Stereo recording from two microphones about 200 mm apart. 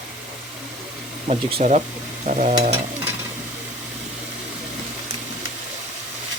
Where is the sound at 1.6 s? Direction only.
35° right (ahead or behind).